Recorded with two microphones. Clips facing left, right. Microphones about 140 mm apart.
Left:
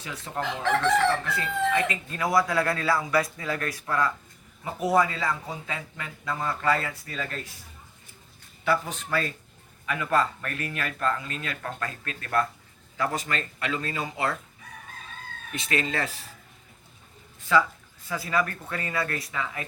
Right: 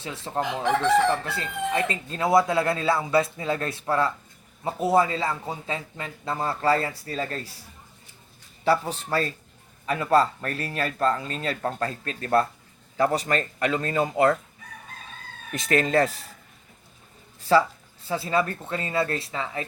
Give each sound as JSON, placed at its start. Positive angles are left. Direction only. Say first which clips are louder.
{"t": 0.0, "sound": "a man's voice", "louder": "right 4 dB", "side_deg": -30}
{"t": 0.6, "sound": "chicken", "louder": "right 2 dB", "side_deg": -15}
{"t": 1.2, "sound": "a man's voice", "louder": "left 2 dB", "side_deg": -30}
{"t": 8.6, "sound": "speech", "louder": "right 3 dB", "side_deg": -35}
{"t": 15.5, "sound": "speech", "louder": "right 7 dB", "side_deg": -40}
{"t": 17.4, "sound": "a man's voice", "louder": "right 3 dB", "side_deg": -35}